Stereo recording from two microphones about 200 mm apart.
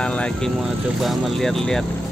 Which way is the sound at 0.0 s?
5° left (ahead or behind).